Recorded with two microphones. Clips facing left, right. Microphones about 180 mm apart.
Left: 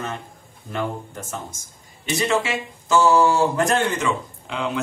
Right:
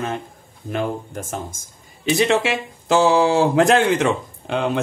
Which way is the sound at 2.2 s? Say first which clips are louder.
Right 3 dB; 65° right (ahead or behind).